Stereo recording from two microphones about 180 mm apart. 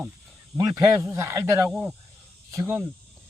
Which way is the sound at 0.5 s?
15° right (ahead or behind).